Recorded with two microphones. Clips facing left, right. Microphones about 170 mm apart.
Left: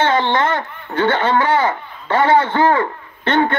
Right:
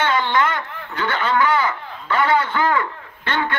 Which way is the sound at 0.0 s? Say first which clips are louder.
Left 3 dB; 25° left (ahead or behind).